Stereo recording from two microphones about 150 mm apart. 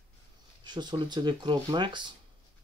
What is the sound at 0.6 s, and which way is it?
Speech, 30° right (ahead or behind).